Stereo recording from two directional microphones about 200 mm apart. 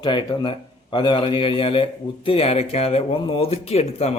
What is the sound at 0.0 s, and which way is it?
Speech, 20° left (ahead or behind).